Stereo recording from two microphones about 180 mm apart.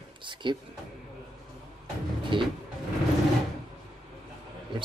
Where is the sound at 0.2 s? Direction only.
25° right (ahead or behind).